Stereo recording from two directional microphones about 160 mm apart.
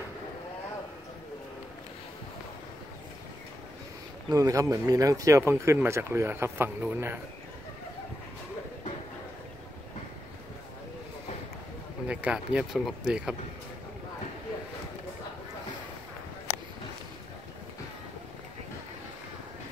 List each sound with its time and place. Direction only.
4.3 s speech: 20° right (ahead or behind)
12.1 s speech: 5° right (ahead or behind)